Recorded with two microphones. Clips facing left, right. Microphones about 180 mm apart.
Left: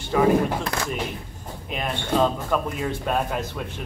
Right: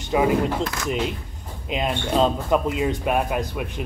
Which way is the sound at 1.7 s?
20° right (ahead or behind).